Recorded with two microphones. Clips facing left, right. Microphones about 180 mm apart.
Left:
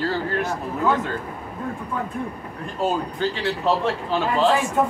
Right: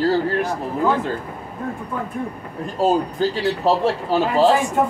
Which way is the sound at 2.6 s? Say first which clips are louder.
Right 5 dB; 35° right (ahead or behind).